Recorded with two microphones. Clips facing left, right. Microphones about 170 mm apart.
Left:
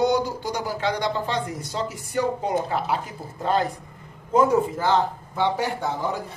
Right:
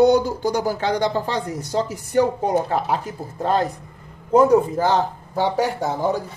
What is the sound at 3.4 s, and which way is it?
Speech, 40° right (ahead or behind).